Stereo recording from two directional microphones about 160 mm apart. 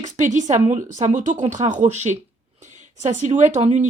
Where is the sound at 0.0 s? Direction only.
50° right (ahead or behind).